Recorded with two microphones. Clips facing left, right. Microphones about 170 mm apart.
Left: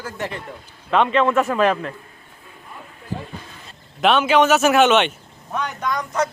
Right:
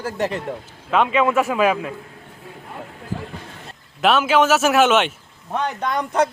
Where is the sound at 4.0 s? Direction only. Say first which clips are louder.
Left 1 dB; centre (ahead or behind).